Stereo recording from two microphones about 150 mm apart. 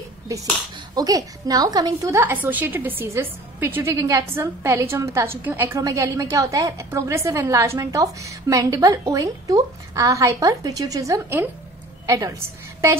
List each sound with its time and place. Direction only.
0.3 s a woman's voice: 20° right (ahead or behind)
5.8 s a woman's voice: 25° right (ahead or behind)